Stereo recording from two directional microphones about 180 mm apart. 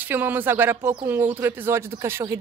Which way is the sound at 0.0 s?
10° right (ahead or behind).